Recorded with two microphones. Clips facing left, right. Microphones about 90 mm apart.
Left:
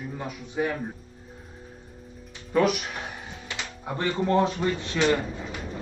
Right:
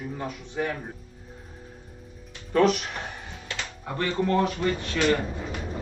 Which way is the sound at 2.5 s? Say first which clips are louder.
Right 2 dB; 5° left (ahead or behind).